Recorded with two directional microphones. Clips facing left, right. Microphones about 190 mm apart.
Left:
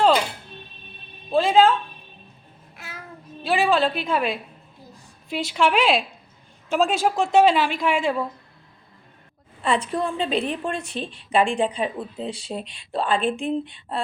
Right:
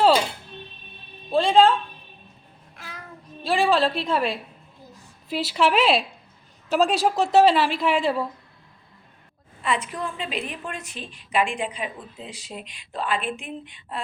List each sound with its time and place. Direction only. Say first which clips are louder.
1.3 s a sound: even; 5° left (ahead or behind)
2.7 s child singing: left 1 dB; 5° left (ahead or behind)
3.4 s a woman's voice: even; centre (ahead or behind)
9.6 s a woman's voice: left 4 dB; 30° left (ahead or behind)